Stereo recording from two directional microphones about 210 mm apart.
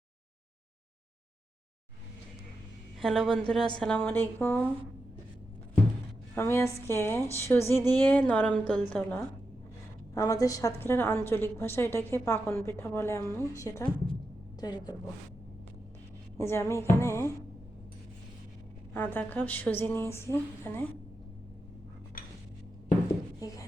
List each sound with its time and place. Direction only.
3.0 s a woman's voice: centre (ahead or behind)
6.3 s a woman's voice: 10° left (ahead or behind)
16.4 s a woman's voice: 10° left (ahead or behind)
18.9 s a woman's voice: 10° left (ahead or behind)